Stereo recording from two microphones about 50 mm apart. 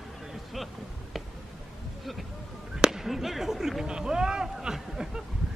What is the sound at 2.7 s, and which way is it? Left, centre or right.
Speech, centre.